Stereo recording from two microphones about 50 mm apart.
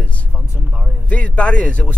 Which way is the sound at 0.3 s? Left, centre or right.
Right.